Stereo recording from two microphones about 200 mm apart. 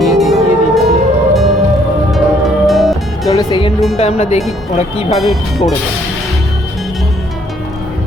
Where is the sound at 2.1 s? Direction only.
Centre (ahead or behind).